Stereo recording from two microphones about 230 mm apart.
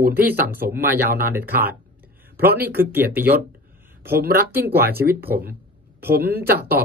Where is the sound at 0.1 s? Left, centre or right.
Centre.